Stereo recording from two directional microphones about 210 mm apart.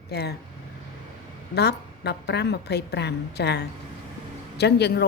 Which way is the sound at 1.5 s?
50° left (ahead or behind).